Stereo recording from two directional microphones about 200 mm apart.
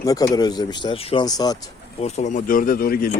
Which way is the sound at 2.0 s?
35° left (ahead or behind).